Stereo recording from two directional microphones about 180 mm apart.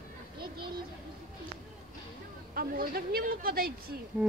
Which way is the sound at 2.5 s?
55° right (ahead or behind).